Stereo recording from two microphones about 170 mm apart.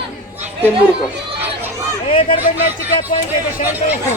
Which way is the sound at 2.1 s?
30° left (ahead or behind).